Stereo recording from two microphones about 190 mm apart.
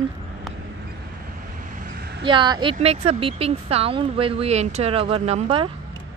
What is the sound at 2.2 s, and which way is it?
Speech, 25° right (ahead or behind).